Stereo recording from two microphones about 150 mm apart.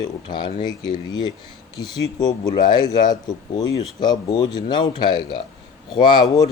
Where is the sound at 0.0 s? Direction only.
30° left (ahead or behind).